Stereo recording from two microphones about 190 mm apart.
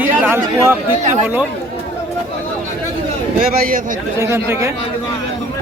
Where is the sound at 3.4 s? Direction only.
45° right (ahead or behind).